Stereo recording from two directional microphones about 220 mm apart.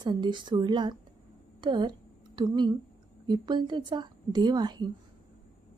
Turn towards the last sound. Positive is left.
turn(degrees=-20)  # may be behind; listen again after turning